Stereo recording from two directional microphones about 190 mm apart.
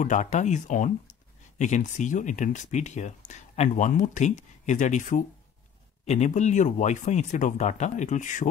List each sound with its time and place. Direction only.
0.0 s speech: 40° left (ahead or behind)